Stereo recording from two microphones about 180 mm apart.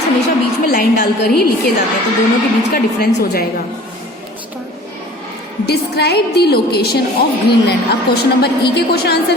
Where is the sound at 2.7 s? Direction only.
60° left (ahead or behind).